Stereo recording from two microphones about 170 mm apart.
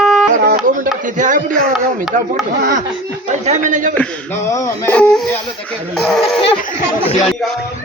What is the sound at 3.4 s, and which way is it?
Speech, 45° right (ahead or behind).